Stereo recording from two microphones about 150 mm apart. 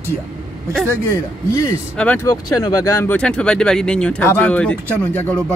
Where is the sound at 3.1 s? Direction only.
5° left (ahead or behind).